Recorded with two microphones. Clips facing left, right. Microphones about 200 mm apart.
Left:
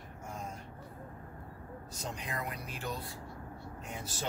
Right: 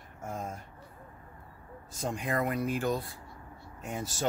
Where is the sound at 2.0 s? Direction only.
50° right (ahead or behind).